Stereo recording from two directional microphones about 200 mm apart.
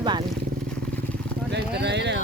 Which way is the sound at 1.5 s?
60° right (ahead or behind).